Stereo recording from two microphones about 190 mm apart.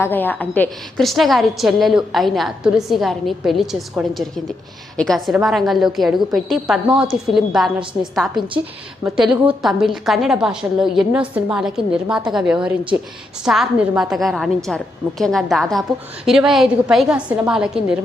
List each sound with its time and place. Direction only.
0.0 s a woman's voice: 10° left (ahead or behind)